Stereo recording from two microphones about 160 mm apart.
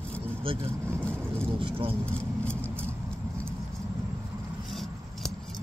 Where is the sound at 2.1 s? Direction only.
10° left (ahead or behind).